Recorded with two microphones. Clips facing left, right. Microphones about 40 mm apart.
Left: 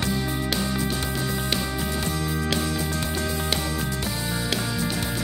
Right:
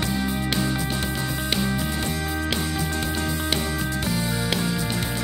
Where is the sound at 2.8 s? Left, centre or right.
Right.